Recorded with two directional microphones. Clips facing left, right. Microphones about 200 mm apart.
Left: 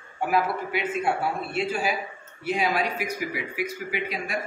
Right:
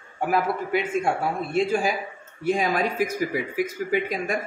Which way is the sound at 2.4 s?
45° right (ahead or behind).